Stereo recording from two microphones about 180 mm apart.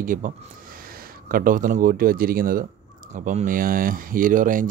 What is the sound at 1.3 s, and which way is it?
Speech, 50° right (ahead or behind).